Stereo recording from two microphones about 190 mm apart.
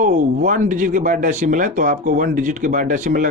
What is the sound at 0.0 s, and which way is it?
Speech, 45° right (ahead or behind).